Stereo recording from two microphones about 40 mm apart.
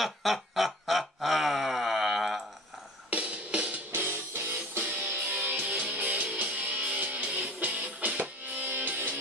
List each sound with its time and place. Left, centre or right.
0.0 s a sound: centre
3.1 s music: right
3.9 s music: right